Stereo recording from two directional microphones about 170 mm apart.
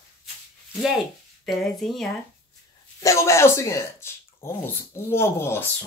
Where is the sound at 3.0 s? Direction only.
15° left (ahead or behind).